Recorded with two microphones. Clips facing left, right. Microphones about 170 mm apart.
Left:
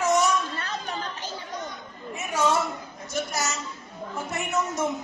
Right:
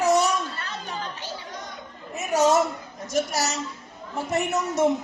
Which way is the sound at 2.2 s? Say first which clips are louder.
Right 5 dB; 40° right (ahead or behind).